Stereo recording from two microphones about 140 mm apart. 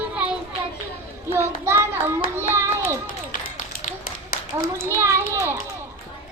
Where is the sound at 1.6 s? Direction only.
15° right (ahead or behind).